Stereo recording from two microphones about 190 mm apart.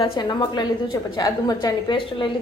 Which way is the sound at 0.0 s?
25° left (ahead or behind).